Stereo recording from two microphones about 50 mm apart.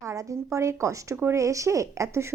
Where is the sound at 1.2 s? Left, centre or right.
Right.